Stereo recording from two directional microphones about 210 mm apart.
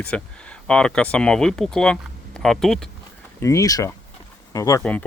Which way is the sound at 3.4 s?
15° left (ahead or behind).